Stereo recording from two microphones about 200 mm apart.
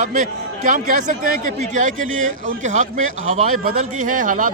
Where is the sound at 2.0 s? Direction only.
80° right.